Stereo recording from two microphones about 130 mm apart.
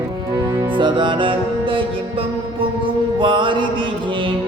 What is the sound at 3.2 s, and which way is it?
Music, 40° right (ahead or behind).